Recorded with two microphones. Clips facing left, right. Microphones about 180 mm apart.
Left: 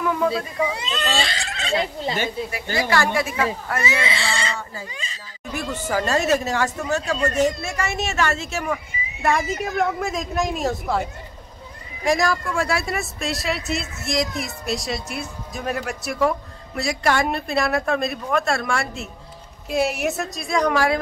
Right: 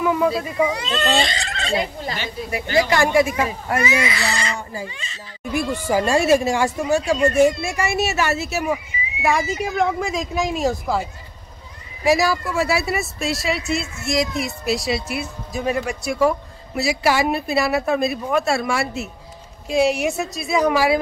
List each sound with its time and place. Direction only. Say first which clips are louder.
0.0 s speech: right 3 dB; 10° right (ahead or behind)
0.7 s speech: right 4 dB; 15° left (ahead or behind)
2.5 s speech: right 6 dB; 20° right (ahead or behind)
3.8 s speech: right 2 dB; 25° left (ahead or behind)
4.6 s speech: right 3 dB; 15° right (ahead or behind)